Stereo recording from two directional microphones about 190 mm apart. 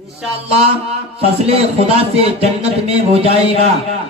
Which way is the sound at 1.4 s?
30° right (ahead or behind).